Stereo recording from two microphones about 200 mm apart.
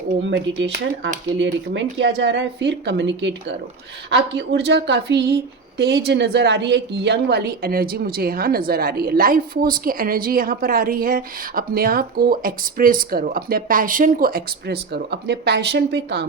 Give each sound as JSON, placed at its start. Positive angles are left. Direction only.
{"t": 0.2, "sound": "a woman's voice", "side_deg": -65}